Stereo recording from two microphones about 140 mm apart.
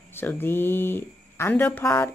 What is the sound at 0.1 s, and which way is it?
Speech, 15° left (ahead or behind).